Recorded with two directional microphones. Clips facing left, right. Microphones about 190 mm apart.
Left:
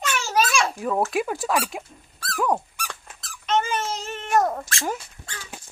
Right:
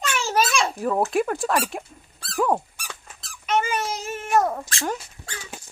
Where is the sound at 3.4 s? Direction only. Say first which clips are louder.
Even; 10° right (ahead or behind).